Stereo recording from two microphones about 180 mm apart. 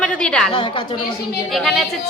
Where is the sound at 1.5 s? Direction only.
Centre (ahead or behind).